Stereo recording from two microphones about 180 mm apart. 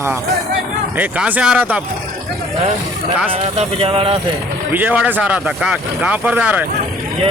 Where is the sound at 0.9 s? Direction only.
10° right (ahead or behind).